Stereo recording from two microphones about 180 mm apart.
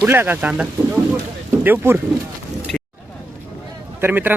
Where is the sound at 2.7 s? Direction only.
5° left (ahead or behind).